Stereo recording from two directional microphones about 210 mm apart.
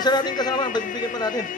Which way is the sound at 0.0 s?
20° left (ahead or behind).